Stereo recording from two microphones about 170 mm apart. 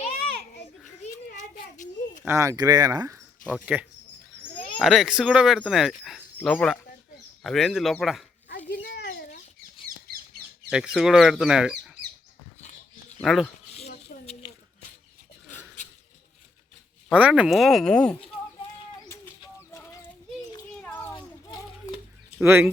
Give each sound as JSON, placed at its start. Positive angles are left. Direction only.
{"t": 1.4, "sound": "a sound", "side_deg": 50}
{"t": 2.2, "sound": "speech", "side_deg": -15}
{"t": 4.8, "sound": "speech", "side_deg": 0}
{"t": 8.8, "sound": "a sound", "side_deg": 65}
{"t": 10.7, "sound": "speech", "side_deg": -5}
{"t": 12.6, "sound": "wild animals", "side_deg": 40}
{"t": 13.2, "sound": "speech", "side_deg": 0}
{"t": 14.1, "sound": "a sound", "side_deg": 55}
{"t": 17.1, "sound": "speech", "side_deg": -10}
{"t": 19.0, "sound": "bird", "side_deg": 15}
{"t": 19.7, "sound": "child singing", "side_deg": 15}
{"t": 20.8, "sound": "children playing", "side_deg": 10}
{"t": 22.4, "sound": "speech", "side_deg": -15}